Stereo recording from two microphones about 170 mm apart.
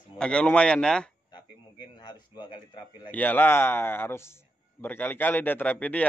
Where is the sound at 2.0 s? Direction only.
25° left (ahead or behind).